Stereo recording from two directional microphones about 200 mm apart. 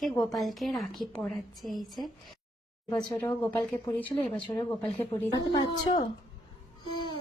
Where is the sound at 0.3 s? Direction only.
Centre (ahead or behind).